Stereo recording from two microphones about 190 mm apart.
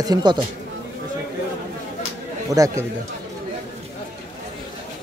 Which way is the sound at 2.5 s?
15° right (ahead or behind).